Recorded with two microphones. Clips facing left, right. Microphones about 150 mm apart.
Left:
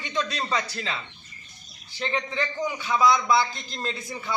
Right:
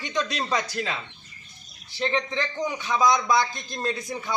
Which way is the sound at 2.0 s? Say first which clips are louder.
Right 3 dB; 15° left (ahead or behind).